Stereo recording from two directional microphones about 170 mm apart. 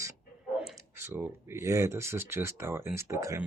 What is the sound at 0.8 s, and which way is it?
Speech, 15° right (ahead or behind).